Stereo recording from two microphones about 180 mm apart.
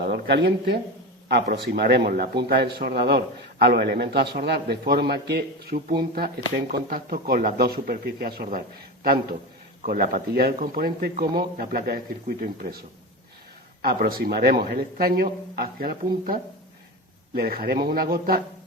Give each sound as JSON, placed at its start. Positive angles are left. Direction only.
{"t": 0.0, "sound": "a man's voice", "side_deg": -70}
{"t": 9.8, "sound": "a man's voice", "side_deg": -50}
{"t": 13.8, "sound": "a man's voice", "side_deg": -55}